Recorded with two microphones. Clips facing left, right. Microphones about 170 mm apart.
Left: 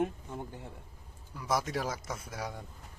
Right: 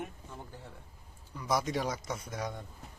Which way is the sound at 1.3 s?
5° left (ahead or behind).